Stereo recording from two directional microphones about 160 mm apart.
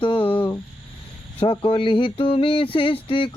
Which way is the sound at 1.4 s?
35° left (ahead or behind).